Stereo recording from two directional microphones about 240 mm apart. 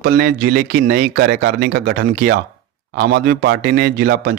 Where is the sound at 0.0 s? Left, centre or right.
Right.